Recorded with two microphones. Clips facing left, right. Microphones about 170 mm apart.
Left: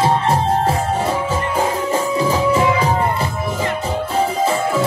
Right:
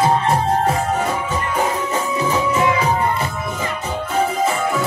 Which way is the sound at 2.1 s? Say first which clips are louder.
Left 2 dB; 35° left (ahead or behind).